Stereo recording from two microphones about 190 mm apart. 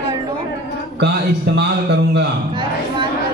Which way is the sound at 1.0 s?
60° right (ahead or behind).